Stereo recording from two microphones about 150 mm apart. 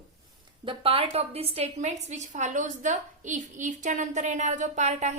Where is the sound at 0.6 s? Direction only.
35° right (ahead or behind).